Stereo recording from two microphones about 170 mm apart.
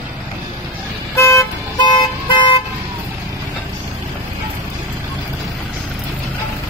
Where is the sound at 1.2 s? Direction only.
15° left (ahead or behind).